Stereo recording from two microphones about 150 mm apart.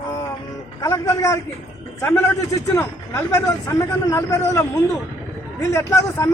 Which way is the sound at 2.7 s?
20° left (ahead or behind).